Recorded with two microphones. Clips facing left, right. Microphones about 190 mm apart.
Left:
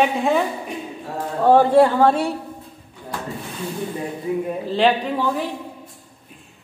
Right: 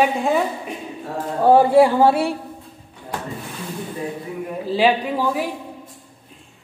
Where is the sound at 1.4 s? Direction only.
10° right (ahead or behind).